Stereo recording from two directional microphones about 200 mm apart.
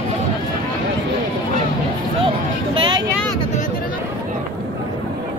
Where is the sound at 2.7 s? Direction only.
25° right (ahead or behind).